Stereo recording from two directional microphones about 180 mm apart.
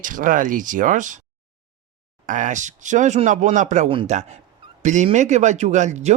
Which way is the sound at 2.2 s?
45° right (ahead or behind).